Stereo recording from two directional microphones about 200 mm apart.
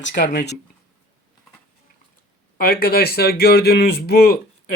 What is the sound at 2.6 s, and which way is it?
Speech, 50° left (ahead or behind).